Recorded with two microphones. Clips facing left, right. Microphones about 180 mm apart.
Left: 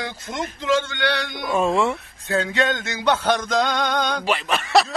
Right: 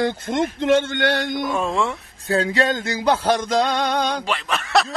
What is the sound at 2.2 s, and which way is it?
Male singing, 35° right (ahead or behind).